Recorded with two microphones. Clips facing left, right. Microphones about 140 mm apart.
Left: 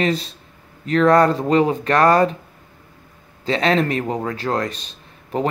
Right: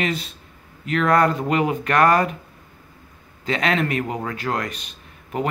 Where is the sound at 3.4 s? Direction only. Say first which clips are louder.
Left 4 dB; 30° left (ahead or behind).